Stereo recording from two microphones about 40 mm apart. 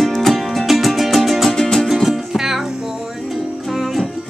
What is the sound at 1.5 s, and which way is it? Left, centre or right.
Music, centre.